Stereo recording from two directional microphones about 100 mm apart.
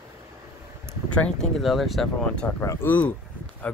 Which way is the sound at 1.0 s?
10° left (ahead or behind).